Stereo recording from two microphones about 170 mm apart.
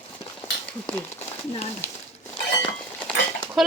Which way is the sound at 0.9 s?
10° left (ahead or behind).